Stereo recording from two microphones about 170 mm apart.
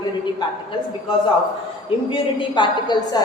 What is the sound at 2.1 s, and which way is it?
A woman's voice, 30° left (ahead or behind).